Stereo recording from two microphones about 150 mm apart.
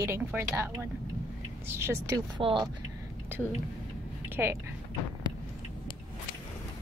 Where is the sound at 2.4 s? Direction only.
35° right (ahead or behind).